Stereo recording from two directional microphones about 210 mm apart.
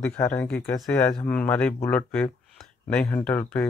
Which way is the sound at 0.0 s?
10° left (ahead or behind).